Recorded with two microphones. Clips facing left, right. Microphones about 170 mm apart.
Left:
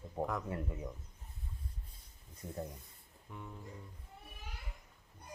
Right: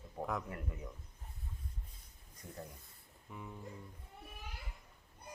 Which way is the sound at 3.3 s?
Centre (ahead or behind).